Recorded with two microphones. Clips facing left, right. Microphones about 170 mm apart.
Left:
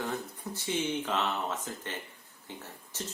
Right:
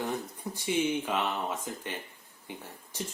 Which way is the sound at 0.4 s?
15° right (ahead or behind).